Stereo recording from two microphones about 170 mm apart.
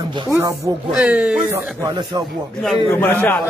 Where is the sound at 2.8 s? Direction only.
10° left (ahead or behind).